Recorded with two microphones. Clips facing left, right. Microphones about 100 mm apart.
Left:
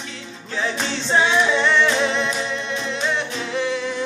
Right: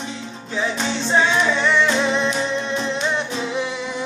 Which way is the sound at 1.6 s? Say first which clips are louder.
Even; 10° right (ahead or behind).